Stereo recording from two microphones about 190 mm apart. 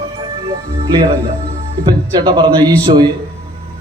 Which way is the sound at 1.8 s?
25° right (ahead or behind).